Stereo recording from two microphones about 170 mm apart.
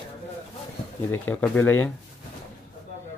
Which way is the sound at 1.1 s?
10° left (ahead or behind).